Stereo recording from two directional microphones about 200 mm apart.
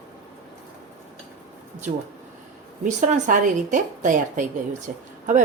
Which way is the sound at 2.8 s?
40° right (ahead or behind).